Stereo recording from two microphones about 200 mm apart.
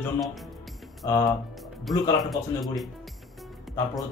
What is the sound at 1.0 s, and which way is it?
Speech, 15° left (ahead or behind).